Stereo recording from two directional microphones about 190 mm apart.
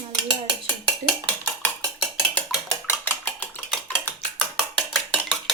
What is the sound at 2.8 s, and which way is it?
Dishes, 10° left (ahead or behind).